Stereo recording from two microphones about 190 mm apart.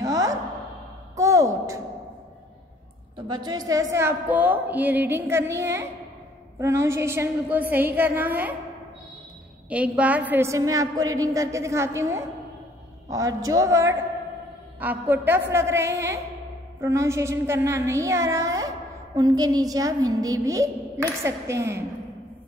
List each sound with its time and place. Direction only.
0.0 s a sound: 20° right (ahead or behind)
3.2 s a woman's voice: 25° right (ahead or behind)
9.7 s a woman's voice: 5° right (ahead or behind)